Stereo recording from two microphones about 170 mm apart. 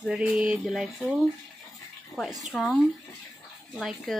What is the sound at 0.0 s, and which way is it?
Speech, 5° right (ahead or behind).